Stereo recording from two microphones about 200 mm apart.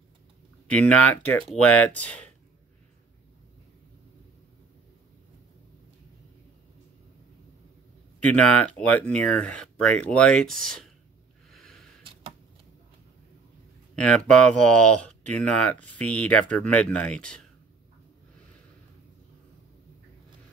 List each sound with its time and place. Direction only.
0.7 s speech: 5° left (ahead or behind)
8.2 s speech: 5° left (ahead or behind)
11.5 s snort: centre (ahead or behind)
12.0 s a sound: 25° right (ahead or behind)
13.9 s speech: 5° left (ahead or behind)